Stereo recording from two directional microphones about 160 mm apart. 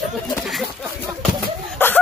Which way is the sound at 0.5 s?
Centre (ahead or behind).